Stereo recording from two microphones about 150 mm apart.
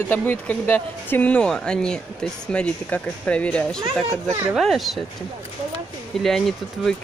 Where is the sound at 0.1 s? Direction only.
10° left (ahead or behind).